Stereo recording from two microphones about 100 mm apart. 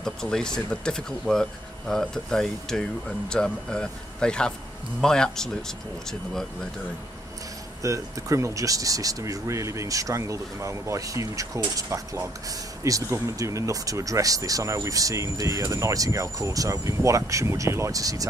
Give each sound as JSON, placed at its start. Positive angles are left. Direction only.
{"t": 0.0, "sound": "speech", "side_deg": 5}
{"t": 7.8, "sound": "speech", "side_deg": -30}